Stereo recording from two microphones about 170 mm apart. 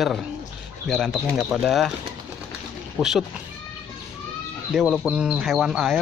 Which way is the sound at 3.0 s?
5° right (ahead or behind).